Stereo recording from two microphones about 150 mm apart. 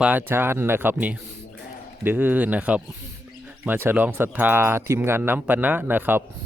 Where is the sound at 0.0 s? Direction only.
10° right (ahead or behind).